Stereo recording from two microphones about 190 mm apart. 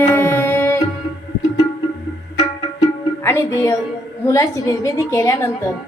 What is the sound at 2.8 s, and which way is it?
Music, 10° left (ahead or behind).